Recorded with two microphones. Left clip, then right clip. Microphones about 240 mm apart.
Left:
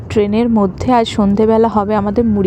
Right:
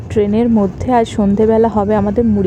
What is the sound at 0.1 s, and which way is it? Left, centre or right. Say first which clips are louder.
A woman's voice: even; left.